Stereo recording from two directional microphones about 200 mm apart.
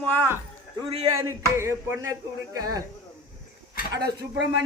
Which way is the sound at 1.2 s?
15° right (ahead or behind).